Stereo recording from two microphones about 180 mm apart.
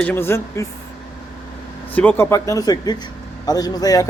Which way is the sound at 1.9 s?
10° left (ahead or behind).